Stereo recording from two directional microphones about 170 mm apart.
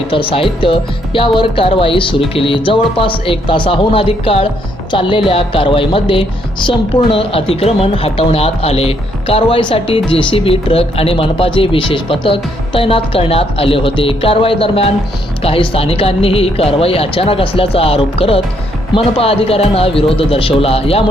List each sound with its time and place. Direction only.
0.1 s speech: 30° left (ahead or behind)